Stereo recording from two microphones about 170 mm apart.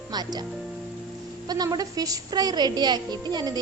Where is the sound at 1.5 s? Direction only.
25° right (ahead or behind).